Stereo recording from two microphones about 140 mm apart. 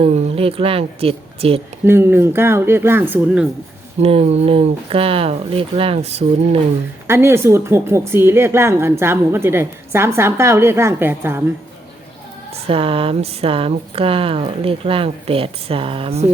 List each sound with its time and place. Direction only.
0.0 s a woman's voice: 45° right (ahead or behind)
1.8 s a woman's voice: 15° right (ahead or behind)
4.0 s speech: 45° right (ahead or behind)
7.1 s a woman's voice: 20° right (ahead or behind)
12.6 s speech: 40° right (ahead or behind)